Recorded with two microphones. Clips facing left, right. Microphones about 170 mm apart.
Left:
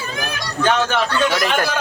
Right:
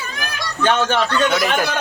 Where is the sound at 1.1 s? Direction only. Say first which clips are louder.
Right 1 dB; centre (ahead or behind).